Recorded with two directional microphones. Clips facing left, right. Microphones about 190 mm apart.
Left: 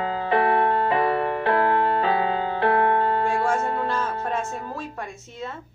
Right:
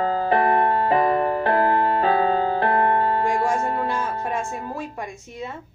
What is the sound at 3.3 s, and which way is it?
Music, 15° right (ahead or behind).